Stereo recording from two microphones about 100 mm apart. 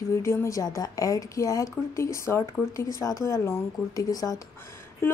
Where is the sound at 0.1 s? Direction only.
25° left (ahead or behind).